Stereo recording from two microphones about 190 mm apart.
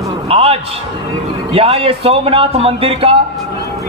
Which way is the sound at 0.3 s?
30° right (ahead or behind).